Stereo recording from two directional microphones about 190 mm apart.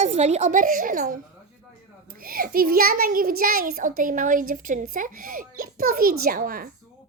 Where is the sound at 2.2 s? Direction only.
50° right (ahead or behind).